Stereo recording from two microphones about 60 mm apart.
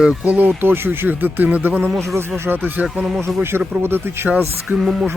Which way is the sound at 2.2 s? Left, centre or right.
Right.